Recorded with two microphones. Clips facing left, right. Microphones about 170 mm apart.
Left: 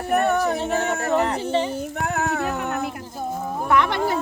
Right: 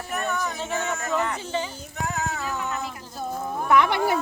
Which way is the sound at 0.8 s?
60° left (ahead or behind).